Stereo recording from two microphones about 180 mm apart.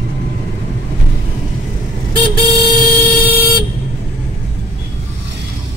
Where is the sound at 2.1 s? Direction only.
25° right (ahead or behind).